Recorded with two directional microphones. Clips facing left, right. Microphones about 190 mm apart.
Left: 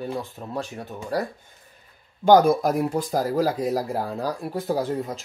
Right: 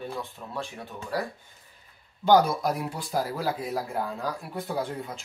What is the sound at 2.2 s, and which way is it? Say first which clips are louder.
Speech: left 5 dB; 50° left (ahead or behind).